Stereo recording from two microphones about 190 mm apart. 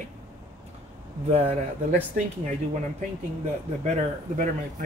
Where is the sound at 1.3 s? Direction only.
35° right (ahead or behind).